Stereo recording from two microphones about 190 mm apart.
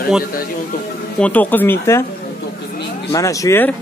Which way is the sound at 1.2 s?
10° left (ahead or behind).